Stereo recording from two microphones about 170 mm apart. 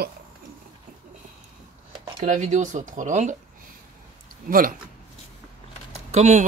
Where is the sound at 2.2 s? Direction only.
45° right (ahead or behind).